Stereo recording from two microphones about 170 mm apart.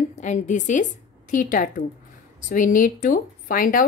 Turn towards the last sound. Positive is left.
turn(degrees=55)  # may be behind; listen again after turning